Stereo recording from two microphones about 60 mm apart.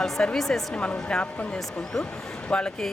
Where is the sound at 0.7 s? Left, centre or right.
Centre.